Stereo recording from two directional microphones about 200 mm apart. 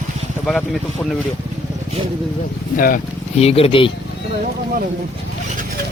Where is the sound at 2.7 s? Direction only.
45° left (ahead or behind).